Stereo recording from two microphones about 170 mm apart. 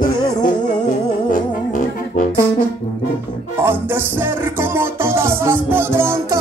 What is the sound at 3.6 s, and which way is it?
Music, 15° right (ahead or behind).